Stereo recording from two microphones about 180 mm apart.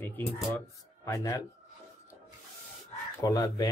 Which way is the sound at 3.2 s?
20° left (ahead or behind).